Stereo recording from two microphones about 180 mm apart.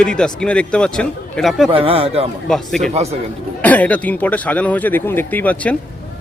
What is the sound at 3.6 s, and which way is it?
Speech, 10° left (ahead or behind).